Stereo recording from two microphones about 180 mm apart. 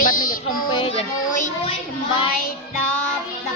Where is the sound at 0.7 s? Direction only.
30° left (ahead or behind).